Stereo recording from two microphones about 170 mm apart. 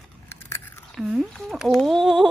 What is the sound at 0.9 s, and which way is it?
Speech, centre (ahead or behind).